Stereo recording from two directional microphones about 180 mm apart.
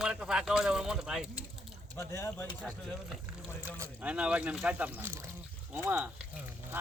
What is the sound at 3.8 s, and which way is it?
Speech, 5° right (ahead or behind).